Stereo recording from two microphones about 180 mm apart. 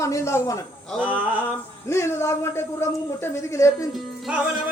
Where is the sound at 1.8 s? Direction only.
15° left (ahead or behind).